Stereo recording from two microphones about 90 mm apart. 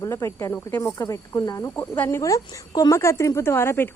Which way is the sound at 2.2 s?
40° left (ahead or behind).